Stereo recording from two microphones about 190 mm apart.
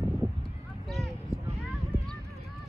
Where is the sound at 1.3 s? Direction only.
15° left (ahead or behind).